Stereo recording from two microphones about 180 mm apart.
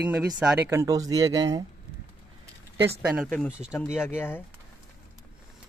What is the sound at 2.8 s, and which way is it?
Speech, 5° right (ahead or behind).